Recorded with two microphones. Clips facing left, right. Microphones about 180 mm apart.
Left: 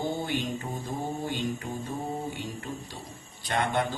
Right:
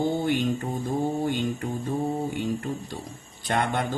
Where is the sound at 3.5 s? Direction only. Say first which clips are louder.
Right 2 dB; 55° right (ahead or behind).